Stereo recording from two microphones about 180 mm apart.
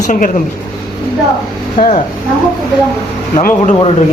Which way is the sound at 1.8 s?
45° left (ahead or behind).